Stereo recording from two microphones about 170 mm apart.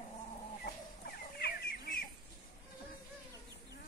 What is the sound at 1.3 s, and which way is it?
Chicken, 65° left (ahead or behind).